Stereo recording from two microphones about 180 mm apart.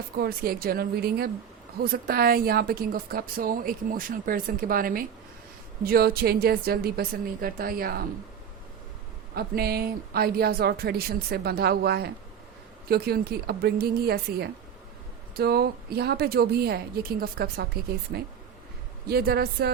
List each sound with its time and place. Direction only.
0.2 s a woman's voice: 55° right (ahead or behind)
9.3 s speech: 60° right (ahead or behind)
19.0 s speech: 60° right (ahead or behind)